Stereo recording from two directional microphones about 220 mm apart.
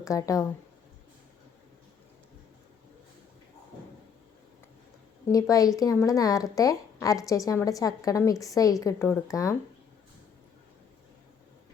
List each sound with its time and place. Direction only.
0.0 s speech: 15° left (ahead or behind)
5.2 s speech: 15° left (ahead or behind)